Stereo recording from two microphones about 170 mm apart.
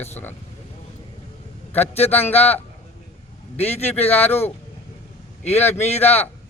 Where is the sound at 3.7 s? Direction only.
40° left (ahead or behind).